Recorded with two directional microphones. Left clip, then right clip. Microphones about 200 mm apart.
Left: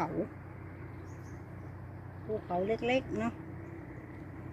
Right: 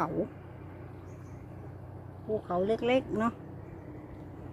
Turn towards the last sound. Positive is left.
turn(degrees=-30)  # may be behind; listen again after turning